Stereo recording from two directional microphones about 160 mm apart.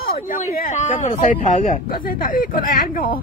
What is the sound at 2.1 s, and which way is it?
Speech, 60° left (ahead or behind).